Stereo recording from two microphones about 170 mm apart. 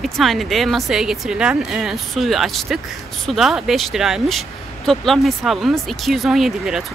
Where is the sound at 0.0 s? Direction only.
Centre (ahead or behind).